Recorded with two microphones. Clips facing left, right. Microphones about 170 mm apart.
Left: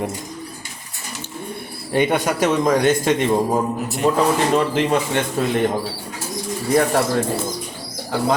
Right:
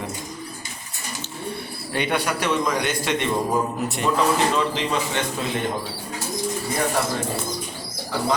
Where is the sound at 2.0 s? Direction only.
45° left (ahead or behind).